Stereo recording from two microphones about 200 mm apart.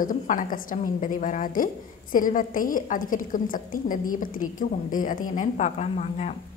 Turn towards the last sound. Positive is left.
turn(degrees=35)  # may be behind; listen again after turning